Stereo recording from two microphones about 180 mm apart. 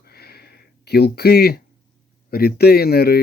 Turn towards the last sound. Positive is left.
turn(degrees=60)  # may be behind; listen again after turning